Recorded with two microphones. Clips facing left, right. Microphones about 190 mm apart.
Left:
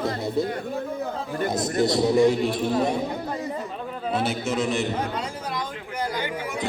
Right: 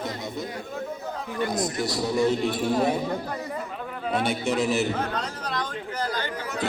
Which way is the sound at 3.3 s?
25° left (ahead or behind).